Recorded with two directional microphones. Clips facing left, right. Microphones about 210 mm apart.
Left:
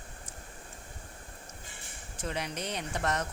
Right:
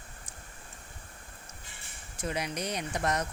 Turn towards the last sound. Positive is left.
turn(degrees=-15)  # may be behind; listen again after turning